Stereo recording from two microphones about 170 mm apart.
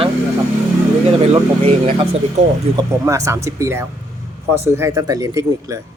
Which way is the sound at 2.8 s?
20° right (ahead or behind).